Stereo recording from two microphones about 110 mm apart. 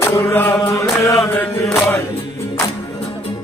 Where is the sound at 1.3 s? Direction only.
25° left (ahead or behind).